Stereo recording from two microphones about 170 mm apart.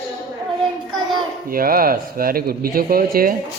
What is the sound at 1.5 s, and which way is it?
Speech, 60° right (ahead or behind).